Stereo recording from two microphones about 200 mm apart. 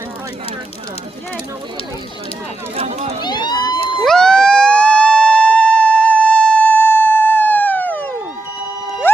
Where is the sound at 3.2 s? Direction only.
20° left (ahead or behind).